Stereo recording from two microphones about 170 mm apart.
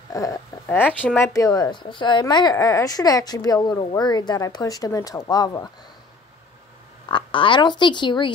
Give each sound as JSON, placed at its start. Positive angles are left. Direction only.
{"t": 0.1, "sound": "a sound", "side_deg": 20}
{"t": 1.0, "sound": "a woman's voice", "side_deg": 15}
{"t": 7.1, "sound": "speech", "side_deg": 30}